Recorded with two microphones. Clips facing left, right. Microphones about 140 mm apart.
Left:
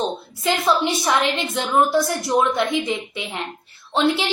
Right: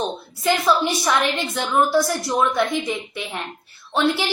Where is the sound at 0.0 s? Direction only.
25° left (ahead or behind).